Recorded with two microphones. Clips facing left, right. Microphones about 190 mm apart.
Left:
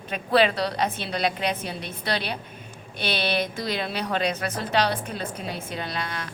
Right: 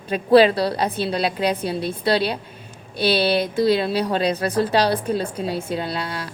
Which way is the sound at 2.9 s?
35° right (ahead or behind).